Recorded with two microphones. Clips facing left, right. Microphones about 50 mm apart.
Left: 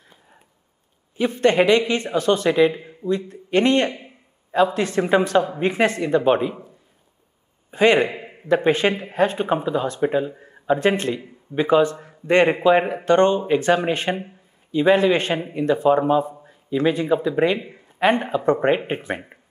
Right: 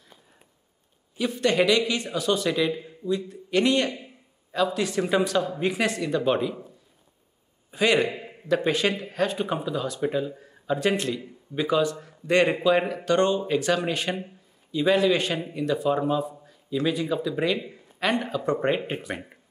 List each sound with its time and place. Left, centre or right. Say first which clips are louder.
1.1 s speech: left 6 dB; left
3.0 s a man's voice: left 8 dB; left
7.7 s a man's voice: left 5 dB; left